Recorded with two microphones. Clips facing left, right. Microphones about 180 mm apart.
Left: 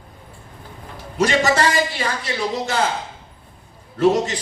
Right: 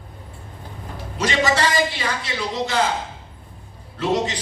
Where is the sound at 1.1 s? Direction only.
45° left (ahead or behind).